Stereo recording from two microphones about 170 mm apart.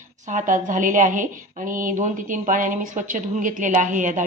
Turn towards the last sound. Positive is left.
turn(degrees=-50)  # may be behind; listen again after turning